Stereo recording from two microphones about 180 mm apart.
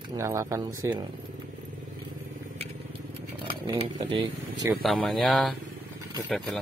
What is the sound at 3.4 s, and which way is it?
Speech, 30° right (ahead or behind).